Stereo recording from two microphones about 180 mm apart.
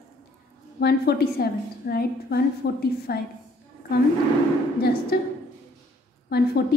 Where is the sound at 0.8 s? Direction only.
60° left (ahead or behind).